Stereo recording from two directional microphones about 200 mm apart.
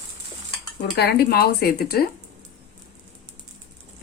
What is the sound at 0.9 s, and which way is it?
Speech, 55° left (ahead or behind).